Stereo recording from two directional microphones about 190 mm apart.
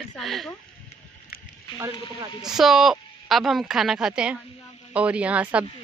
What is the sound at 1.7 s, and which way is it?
Speech, 15° right (ahead or behind).